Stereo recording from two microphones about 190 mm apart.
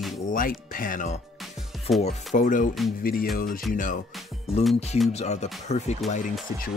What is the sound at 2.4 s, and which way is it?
Speech, 45° left (ahead or behind).